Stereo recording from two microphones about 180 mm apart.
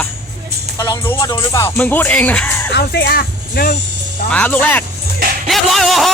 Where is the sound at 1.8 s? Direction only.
10° left (ahead or behind).